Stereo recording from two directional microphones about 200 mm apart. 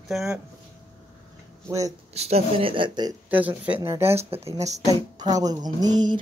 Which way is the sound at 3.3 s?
10° right (ahead or behind).